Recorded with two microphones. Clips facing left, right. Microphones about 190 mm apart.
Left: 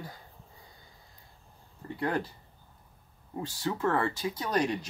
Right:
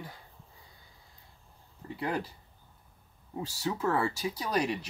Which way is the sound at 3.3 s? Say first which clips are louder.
Left 1 dB; 5° right (ahead or behind).